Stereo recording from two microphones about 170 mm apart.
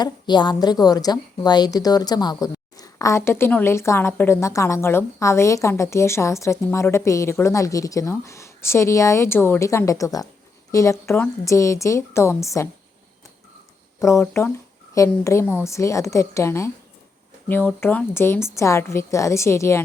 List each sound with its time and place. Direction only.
0.0 s a woman's voice: 25° left (ahead or behind)
14.0 s a woman's voice: 15° left (ahead or behind)